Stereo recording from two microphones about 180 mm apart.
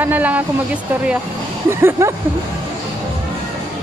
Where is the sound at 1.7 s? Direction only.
15° right (ahead or behind).